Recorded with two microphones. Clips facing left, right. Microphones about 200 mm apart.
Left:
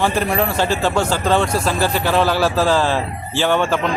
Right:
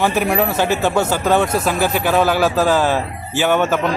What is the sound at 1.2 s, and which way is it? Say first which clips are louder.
Speech: right 1 dB; 5° right (ahead or behind).